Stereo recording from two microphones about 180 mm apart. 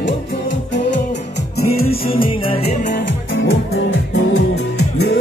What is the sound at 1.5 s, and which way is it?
Music, 55° left (ahead or behind).